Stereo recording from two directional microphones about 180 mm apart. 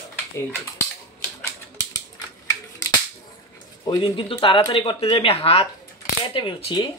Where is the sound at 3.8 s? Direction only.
25° left (ahead or behind).